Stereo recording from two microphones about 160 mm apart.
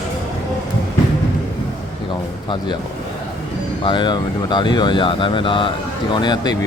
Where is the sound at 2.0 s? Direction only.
30° left (ahead or behind).